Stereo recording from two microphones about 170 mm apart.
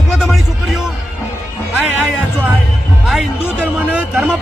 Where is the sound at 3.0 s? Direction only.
Centre (ahead or behind).